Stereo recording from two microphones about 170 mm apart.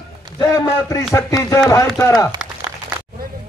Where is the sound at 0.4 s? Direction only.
20° left (ahead or behind).